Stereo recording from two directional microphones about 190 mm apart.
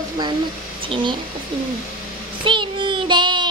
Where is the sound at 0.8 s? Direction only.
25° right (ahead or behind).